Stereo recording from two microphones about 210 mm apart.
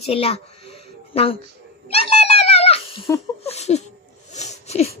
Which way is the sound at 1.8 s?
30° left (ahead or behind).